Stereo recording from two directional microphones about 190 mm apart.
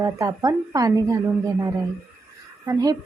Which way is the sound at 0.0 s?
20° right (ahead or behind).